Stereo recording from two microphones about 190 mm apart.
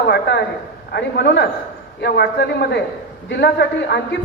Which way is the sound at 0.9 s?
65° left (ahead or behind).